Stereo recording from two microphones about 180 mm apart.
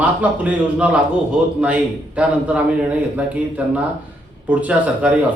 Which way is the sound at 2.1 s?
5° right (ahead or behind).